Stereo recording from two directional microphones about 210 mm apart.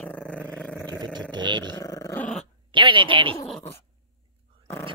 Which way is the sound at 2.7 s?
25° right (ahead or behind).